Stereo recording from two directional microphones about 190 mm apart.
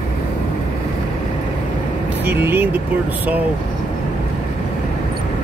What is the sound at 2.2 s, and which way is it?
Speech, 10° right (ahead or behind).